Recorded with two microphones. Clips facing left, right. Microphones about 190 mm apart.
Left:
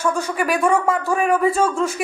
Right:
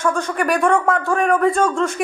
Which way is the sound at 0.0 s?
5° left (ahead or behind).